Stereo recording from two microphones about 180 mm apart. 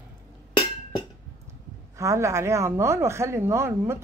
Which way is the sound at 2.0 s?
15° right (ahead or behind).